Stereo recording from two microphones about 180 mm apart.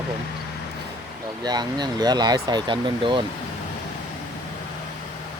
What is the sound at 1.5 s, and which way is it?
Speech, 25° right (ahead or behind).